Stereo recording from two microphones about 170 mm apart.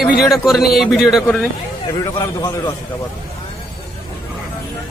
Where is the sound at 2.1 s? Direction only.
25° left (ahead or behind).